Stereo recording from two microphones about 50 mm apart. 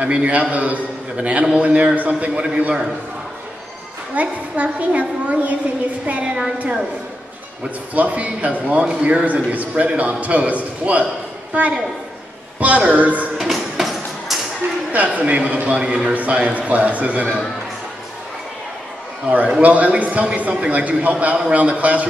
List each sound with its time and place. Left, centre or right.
0.0 s a man's voice: right
4.1 s a man's voice: right
7.9 s a man's voice: right
13.5 s music: centre
14.9 s a man's voice: right
19.2 s a man's voice: right